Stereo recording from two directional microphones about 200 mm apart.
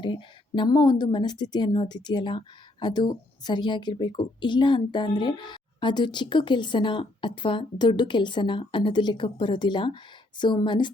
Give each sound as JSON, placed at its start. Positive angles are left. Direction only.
{"t": 0.0, "sound": "a woman's voice", "side_deg": 25}